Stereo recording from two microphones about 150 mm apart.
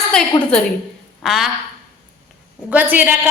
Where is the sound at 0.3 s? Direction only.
25° left (ahead or behind).